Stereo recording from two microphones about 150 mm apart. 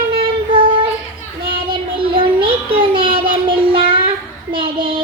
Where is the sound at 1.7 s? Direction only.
35° right (ahead or behind).